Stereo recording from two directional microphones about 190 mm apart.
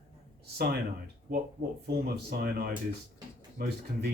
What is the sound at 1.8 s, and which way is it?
Speech, 55° right (ahead or behind).